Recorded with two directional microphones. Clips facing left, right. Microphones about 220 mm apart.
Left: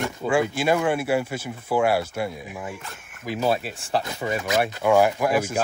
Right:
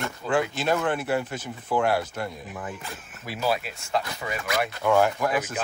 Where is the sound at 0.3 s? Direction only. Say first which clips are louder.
Left 3 dB; 10° left (ahead or behind).